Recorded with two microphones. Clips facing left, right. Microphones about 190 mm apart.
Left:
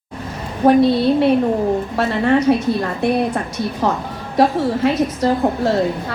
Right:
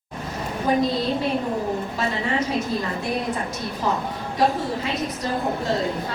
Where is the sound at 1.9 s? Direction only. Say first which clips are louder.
Left 10 dB; 65° left (ahead or behind).